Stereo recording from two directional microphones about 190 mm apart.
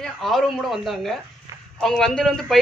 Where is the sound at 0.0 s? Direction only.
Centre (ahead or behind).